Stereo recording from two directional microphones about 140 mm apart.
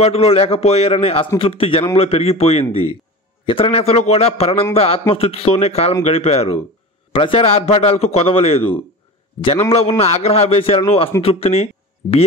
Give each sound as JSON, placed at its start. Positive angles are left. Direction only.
{"t": 0.0, "sound": "a man's voice", "side_deg": 45}